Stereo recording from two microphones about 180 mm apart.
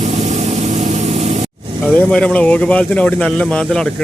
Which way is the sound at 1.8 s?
5° left (ahead or behind).